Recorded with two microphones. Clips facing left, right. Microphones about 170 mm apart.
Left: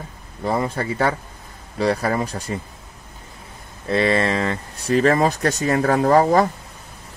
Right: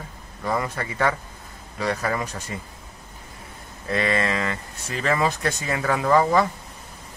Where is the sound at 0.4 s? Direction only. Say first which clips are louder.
Left 4 dB; 30° left (ahead or behind).